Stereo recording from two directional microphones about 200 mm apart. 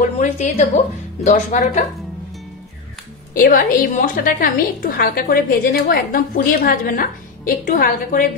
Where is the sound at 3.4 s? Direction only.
45° left (ahead or behind).